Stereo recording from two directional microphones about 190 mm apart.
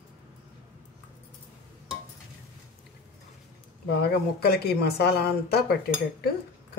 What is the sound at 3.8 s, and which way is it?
Speech, 60° left (ahead or behind).